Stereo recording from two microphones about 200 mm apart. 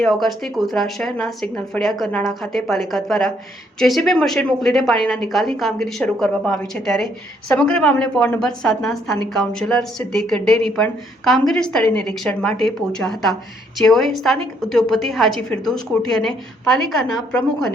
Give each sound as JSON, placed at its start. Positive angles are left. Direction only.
{"t": 0.0, "sound": "speech", "side_deg": 0}